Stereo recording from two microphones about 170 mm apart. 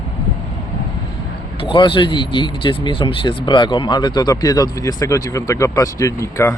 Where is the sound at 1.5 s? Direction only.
30° left (ahead or behind).